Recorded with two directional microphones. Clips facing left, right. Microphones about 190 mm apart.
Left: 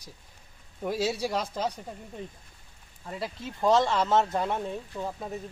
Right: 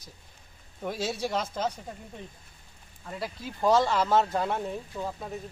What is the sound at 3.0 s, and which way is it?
Speech, centre (ahead or behind).